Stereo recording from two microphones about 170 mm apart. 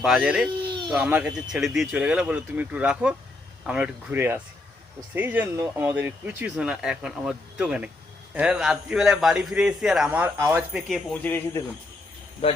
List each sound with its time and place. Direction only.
0.0 s a man's voice: 5° right (ahead or behind)
0.7 s baby cry: 30° right (ahead or behind)
0.9 s a man's voice: 5° right (ahead or behind); by 11.6 s 10° left (ahead or behind)